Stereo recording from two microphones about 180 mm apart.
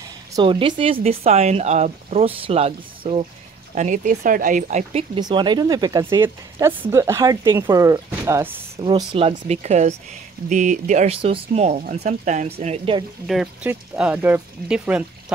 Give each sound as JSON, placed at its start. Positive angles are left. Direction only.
{"t": 0.3, "sound": "speech", "side_deg": -25}
{"t": 3.7, "sound": "speech", "side_deg": -45}
{"t": 5.2, "sound": "speech", "side_deg": -25}
{"t": 8.7, "sound": "speech", "side_deg": -30}
{"t": 13.3, "sound": "speech", "side_deg": -5}